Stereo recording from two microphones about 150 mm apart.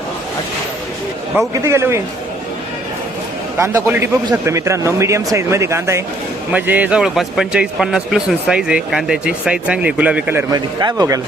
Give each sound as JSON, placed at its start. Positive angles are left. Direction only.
{"t": 1.5, "sound": "a man's voice", "side_deg": -20}
{"t": 3.6, "sound": "a man's voice", "side_deg": -15}
{"t": 10.5, "sound": "speech", "side_deg": -25}